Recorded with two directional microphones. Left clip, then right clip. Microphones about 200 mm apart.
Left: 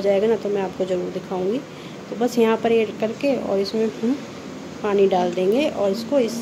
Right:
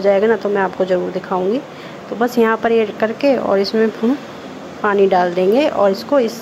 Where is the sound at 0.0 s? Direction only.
Centre (ahead or behind).